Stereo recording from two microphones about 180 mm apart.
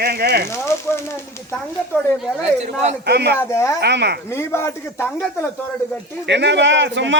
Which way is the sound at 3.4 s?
15° left (ahead or behind).